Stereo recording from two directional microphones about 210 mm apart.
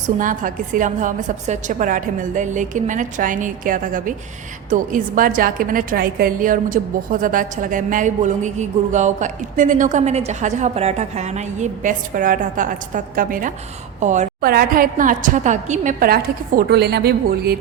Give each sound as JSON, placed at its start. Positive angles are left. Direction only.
{"t": 0.2, "sound": "a woman's voice", "side_deg": -40}